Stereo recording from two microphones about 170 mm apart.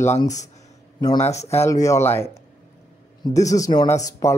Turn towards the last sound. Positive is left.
turn(degrees=20)  # may be behind; listen again after turning